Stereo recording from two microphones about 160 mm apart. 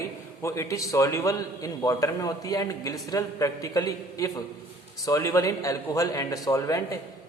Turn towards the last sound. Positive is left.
turn(degrees=20)  # may be behind; listen again after turning